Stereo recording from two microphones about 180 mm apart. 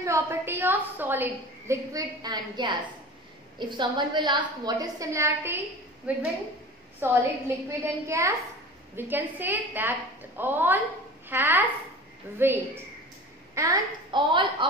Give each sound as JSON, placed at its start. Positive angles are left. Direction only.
{"t": 0.0, "sound": "a woman's voice", "side_deg": -15}